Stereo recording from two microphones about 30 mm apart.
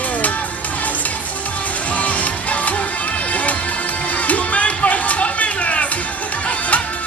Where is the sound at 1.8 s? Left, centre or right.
Left.